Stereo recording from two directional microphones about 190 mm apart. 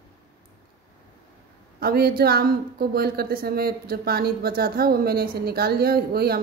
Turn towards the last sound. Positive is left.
turn(degrees=-55)  # may be behind; listen again after turning